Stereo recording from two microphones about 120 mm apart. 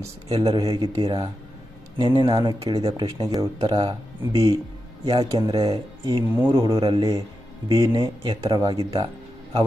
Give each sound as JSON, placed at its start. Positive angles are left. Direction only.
{"t": 0.0, "sound": "speech", "side_deg": -30}
{"t": 0.5, "sound": "speech", "side_deg": -50}
{"t": 2.6, "sound": "speech", "side_deg": -55}
{"t": 3.0, "sound": "speech", "side_deg": -30}
{"t": 3.5, "sound": "speech", "side_deg": -45}
{"t": 6.3, "sound": "speech", "side_deg": -20}
{"t": 6.6, "sound": "speech", "side_deg": -45}
{"t": 8.9, "sound": "music", "side_deg": -45}